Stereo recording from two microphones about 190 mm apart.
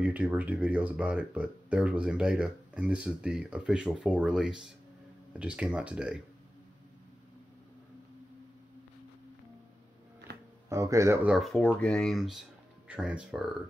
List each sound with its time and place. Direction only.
0.0 s speech: 5° right (ahead or behind)
10.7 s speech: 15° right (ahead or behind)
11.3 s speech: centre (ahead or behind)